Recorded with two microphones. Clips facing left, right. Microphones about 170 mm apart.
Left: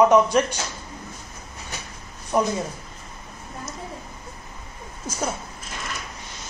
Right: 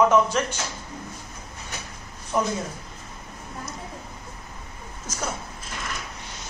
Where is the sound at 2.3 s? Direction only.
35° left (ahead or behind).